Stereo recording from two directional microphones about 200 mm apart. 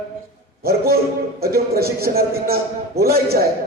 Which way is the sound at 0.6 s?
50° right (ahead or behind).